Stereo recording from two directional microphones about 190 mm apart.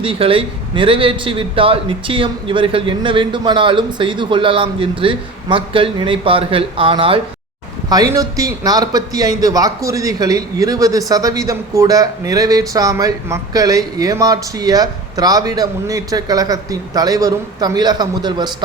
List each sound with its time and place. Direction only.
0.0 s a man's voice: 30° right (ahead or behind)